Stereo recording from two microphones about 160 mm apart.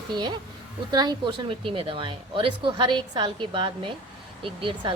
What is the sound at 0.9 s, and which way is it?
Speech, 25° right (ahead or behind).